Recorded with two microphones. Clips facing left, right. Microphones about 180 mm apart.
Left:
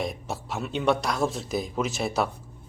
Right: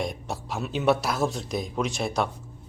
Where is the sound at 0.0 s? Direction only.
Centre (ahead or behind).